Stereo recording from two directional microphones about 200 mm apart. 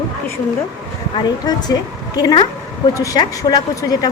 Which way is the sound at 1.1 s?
20° left (ahead or behind).